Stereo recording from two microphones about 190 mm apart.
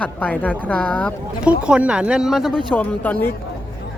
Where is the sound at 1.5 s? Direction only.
5° right (ahead or behind).